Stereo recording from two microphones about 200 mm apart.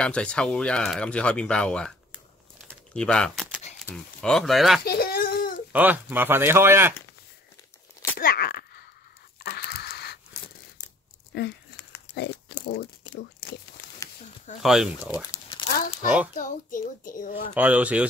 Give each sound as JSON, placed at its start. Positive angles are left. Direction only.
{"t": 0.0, "sound": "speech", "side_deg": 5}
{"t": 2.9, "sound": "a sound", "side_deg": 5}
{"t": 3.9, "sound": "speech", "side_deg": 10}
{"t": 4.8, "sound": "whimper", "side_deg": 50}
{"t": 5.7, "sound": "speech", "side_deg": -10}
{"t": 8.2, "sound": "a sound", "side_deg": 50}
{"t": 11.3, "sound": "a sound", "side_deg": 55}
{"t": 12.6, "sound": "a sound", "side_deg": 50}
{"t": 14.6, "sound": "speech", "side_deg": 0}
{"t": 15.5, "sound": "crumpling", "side_deg": 30}
{"t": 16.3, "sound": "a child's voice", "side_deg": 40}
{"t": 17.6, "sound": "speech", "side_deg": -5}